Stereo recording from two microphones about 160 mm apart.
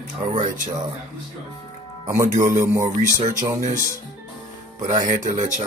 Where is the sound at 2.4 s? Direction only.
20° right (ahead or behind).